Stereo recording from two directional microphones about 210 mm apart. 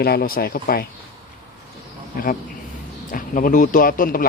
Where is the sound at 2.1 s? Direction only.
40° left (ahead or behind).